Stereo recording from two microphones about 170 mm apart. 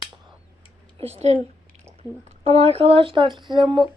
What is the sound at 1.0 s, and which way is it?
Speech, 35° right (ahead or behind).